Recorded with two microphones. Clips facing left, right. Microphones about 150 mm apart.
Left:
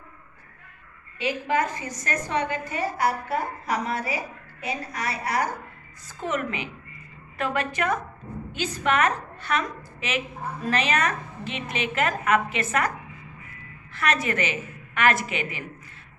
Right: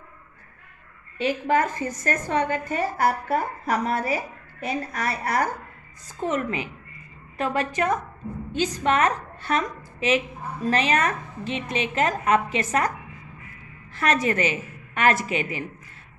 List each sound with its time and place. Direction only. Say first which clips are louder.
1.1 s a woman's voice: right 3 dB; 50° right (ahead or behind)
6.2 s a woman's voice: right 3 dB; 35° right (ahead or behind)
13.9 s a woman's voice: right 3 dB; 40° right (ahead or behind)